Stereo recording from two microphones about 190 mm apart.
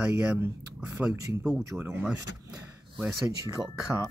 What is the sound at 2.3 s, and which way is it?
Speech, 60° left (ahead or behind).